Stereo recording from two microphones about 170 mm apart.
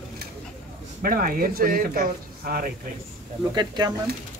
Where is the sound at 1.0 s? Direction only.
55° right (ahead or behind).